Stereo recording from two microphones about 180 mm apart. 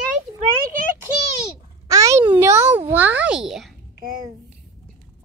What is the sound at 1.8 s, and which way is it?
A child's voice, 20° right (ahead or behind).